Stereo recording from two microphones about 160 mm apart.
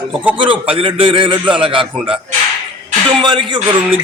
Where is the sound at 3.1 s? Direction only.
30° right (ahead or behind).